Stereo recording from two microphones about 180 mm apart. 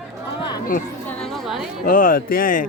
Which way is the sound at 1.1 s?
5° left (ahead or behind).